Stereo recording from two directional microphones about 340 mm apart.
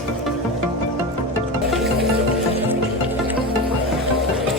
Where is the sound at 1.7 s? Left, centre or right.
Centre.